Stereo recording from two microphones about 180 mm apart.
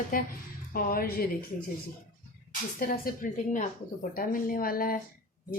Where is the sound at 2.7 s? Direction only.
55° left (ahead or behind).